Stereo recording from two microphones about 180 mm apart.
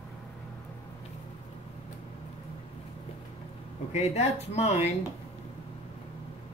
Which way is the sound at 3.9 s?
40° left (ahead or behind).